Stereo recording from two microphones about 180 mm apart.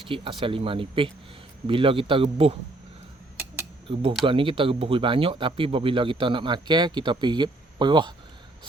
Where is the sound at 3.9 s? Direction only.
30° right (ahead or behind).